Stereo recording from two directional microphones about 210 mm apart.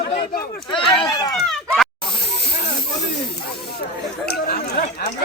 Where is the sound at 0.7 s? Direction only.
25° left (ahead or behind).